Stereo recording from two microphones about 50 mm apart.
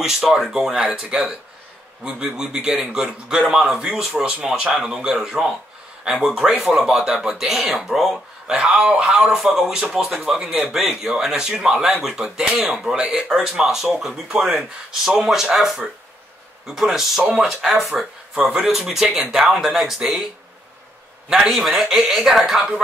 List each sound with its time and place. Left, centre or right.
0.0 s a man's voice: centre
7.6 s speech: centre
7.9 s a man's voice: centre
21.3 s a man's voice: centre